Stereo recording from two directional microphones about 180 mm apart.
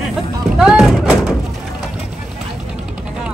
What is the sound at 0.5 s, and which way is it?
Music, 5° right (ahead or behind).